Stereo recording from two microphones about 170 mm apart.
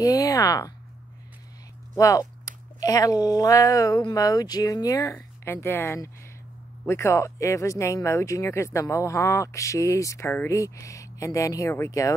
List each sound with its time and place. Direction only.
0.0 s speech: 20° left (ahead or behind)
2.0 s speech: 20° left (ahead or behind)